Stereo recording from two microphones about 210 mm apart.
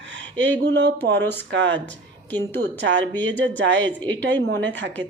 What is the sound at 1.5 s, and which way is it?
Speech, 60° right (ahead or behind).